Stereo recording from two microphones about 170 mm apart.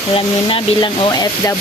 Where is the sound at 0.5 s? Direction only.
25° left (ahead or behind).